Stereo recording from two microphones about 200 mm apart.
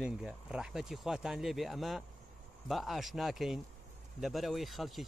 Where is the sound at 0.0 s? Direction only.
5° right (ahead or behind).